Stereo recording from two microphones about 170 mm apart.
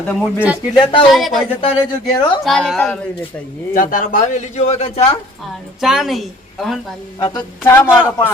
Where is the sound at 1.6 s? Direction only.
25° left (ahead or behind).